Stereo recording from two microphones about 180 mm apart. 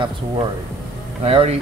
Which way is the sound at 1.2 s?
35° right (ahead or behind).